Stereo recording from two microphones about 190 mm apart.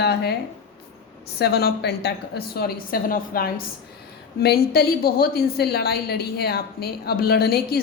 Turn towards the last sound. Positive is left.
turn(degrees=55)  # may be behind; listen again after turning